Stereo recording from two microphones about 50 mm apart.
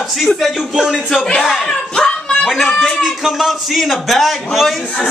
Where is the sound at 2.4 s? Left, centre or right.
Centre.